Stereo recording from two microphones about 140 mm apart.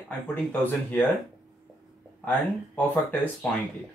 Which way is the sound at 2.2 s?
15° left (ahead or behind).